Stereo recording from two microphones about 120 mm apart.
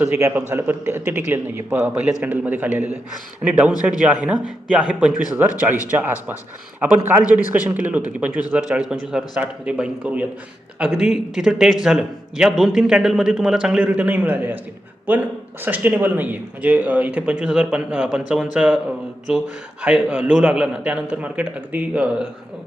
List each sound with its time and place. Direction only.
0.0 s a man's voice: 20° right (ahead or behind)
15.6 s a man's voice: 15° right (ahead or behind)